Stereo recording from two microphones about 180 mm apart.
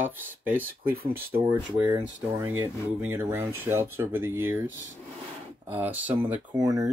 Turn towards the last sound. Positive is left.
turn(degrees=-10)  # may be behind; listen again after turning